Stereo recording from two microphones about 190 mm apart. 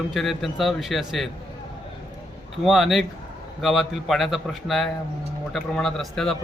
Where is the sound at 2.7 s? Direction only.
Centre (ahead or behind).